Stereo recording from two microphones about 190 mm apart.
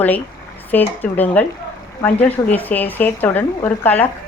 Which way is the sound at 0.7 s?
10° left (ahead or behind).